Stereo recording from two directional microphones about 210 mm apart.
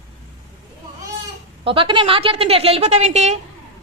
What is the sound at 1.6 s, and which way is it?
A woman's voice, 25° right (ahead or behind).